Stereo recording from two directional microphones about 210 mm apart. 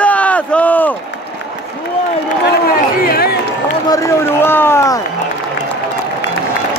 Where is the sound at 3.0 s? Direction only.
45° left (ahead or behind).